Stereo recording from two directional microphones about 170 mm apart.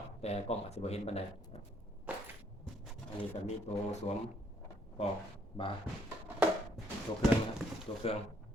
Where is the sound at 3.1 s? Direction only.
40° left (ahead or behind).